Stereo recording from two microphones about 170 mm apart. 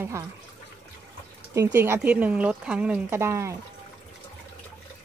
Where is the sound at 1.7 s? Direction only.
15° right (ahead or behind).